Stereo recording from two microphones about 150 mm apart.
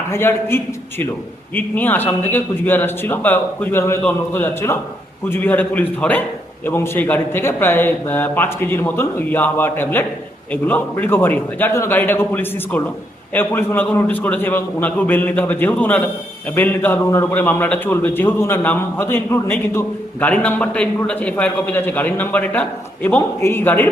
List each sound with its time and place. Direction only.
0.1 s a man's voice: 15° left (ahead or behind)